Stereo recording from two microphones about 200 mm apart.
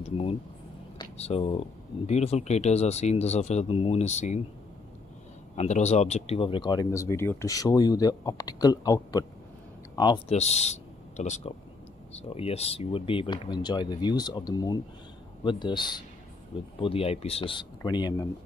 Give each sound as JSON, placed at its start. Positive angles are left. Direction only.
{"t": 1.1, "sound": "speech", "side_deg": 30}
{"t": 5.6, "sound": "speech", "side_deg": 35}